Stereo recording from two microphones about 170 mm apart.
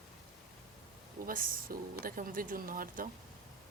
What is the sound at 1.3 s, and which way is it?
Speech, 55° right (ahead or behind).